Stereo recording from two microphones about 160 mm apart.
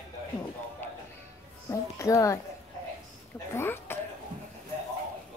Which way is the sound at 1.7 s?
20° left (ahead or behind).